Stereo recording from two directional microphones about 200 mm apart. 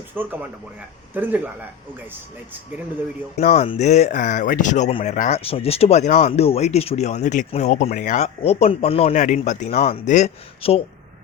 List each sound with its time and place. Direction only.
0.1 s speech: 10° right (ahead or behind)
3.4 s speech: 35° left (ahead or behind)